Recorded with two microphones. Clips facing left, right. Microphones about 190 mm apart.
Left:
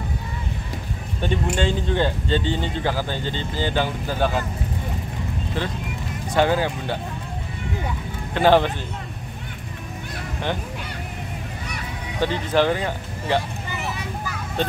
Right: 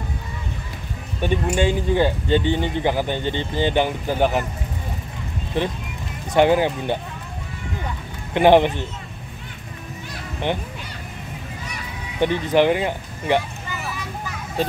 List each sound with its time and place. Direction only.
1.2 s speech: 10° right (ahead or behind)
5.6 s speech: 20° right (ahead or behind)
8.4 s speech: 20° right (ahead or behind)
12.2 s speech: 15° right (ahead or behind)
14.6 s a child's voice: 5° right (ahead or behind)